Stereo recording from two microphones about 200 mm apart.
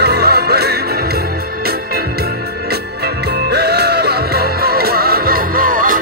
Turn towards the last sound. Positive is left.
turn(degrees=-45)  # may be behind; listen again after turning